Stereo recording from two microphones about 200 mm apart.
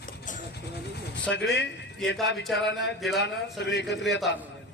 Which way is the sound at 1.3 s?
60° left (ahead or behind).